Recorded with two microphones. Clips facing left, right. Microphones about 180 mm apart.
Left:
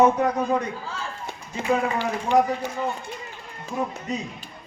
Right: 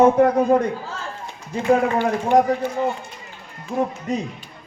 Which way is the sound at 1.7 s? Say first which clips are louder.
Right 6 dB; 55° right (ahead or behind).